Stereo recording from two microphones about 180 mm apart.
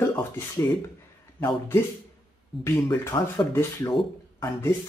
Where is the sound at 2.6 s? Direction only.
20° left (ahead or behind).